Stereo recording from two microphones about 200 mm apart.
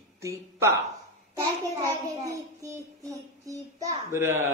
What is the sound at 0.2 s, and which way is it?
Child singing, 15° right (ahead or behind).